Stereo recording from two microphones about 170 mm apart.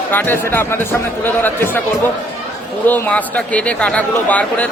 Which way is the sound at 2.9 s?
10° left (ahead or behind).